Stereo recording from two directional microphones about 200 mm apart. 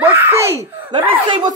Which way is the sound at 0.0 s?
10° right (ahead or behind).